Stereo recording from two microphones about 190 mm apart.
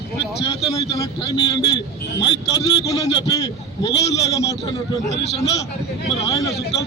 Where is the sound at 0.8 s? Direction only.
20° left (ahead or behind).